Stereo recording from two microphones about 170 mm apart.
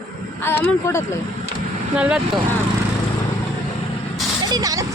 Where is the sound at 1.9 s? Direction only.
5° right (ahead or behind).